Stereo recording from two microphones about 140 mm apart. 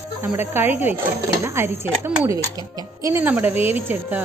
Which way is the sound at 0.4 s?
15° right (ahead or behind).